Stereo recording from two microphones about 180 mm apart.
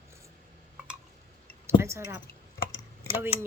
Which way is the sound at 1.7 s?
15° right (ahead or behind).